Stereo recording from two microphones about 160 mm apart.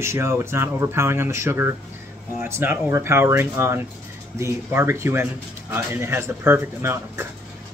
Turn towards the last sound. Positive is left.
turn(degrees=-15)  # may be behind; listen again after turning